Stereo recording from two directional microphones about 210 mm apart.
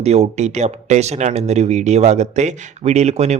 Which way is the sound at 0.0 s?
30° right (ahead or behind).